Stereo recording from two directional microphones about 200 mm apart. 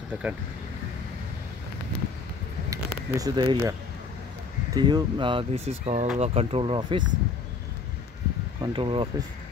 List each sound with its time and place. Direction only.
0.1 s speech: 5° right (ahead or behind)
2.7 s speech: 20° right (ahead or behind)
4.7 s speech: 20° right (ahead or behind)
8.7 s speech: 25° right (ahead or behind)